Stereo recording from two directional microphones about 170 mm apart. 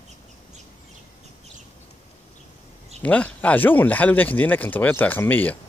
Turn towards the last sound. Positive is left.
turn(degrees=10)  # may be behind; listen again after turning